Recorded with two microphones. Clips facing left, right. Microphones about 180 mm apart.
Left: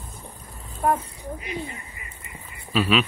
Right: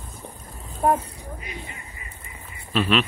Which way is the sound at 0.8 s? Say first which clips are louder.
Right 2 dB; 30° right (ahead or behind).